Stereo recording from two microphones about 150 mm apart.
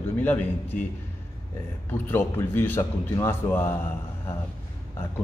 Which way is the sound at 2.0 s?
15° left (ahead or behind).